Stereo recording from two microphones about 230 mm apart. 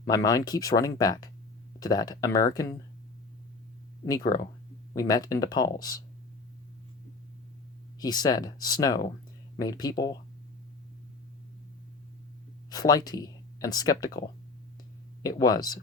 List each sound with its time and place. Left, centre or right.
0.1 s speech: centre
4.0 s speech: centre
7.9 s speech: centre
12.7 s speech: centre
15.2 s speech: centre